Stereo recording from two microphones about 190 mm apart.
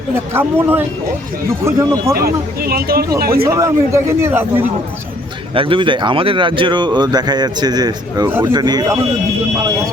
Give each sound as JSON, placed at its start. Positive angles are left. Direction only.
{"t": 0.3, "sound": "a man's voice", "side_deg": -10}
{"t": 2.1, "sound": "speech", "side_deg": -55}
{"t": 3.5, "sound": "a man's voice", "side_deg": -15}
{"t": 5.5, "sound": "a man's voice", "side_deg": -25}